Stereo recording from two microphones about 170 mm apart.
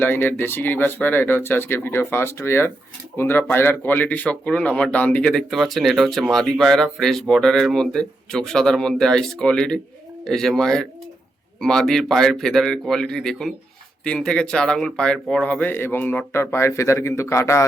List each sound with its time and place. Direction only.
0.0 s speech: 10° left (ahead or behind)